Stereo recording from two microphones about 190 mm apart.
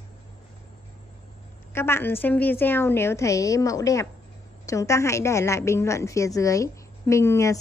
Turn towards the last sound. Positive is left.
turn(degrees=15)  # may be behind; listen again after turning